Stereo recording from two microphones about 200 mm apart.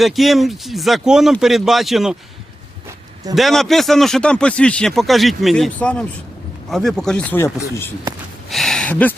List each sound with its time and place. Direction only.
0.0 s speech: centre (ahead or behind)
3.3 s speech: centre (ahead or behind)
8.4 s a sound: centre (ahead or behind)